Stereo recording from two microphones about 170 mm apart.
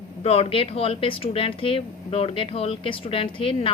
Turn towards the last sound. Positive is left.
turn(degrees=30)  # may be behind; listen again after turning